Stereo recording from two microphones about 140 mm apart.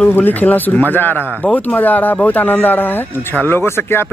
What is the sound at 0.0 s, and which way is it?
Speech, 15° left (ahead or behind).